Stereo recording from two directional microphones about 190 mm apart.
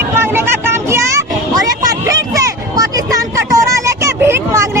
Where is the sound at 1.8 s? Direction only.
15° right (ahead or behind).